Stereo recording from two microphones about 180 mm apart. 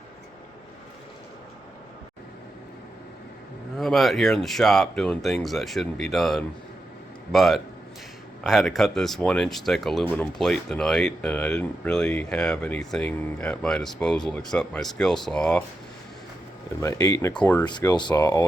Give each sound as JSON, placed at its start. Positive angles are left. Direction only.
{"t": 3.8, "sound": "speech", "side_deg": 0}
{"t": 16.8, "sound": "speech", "side_deg": 20}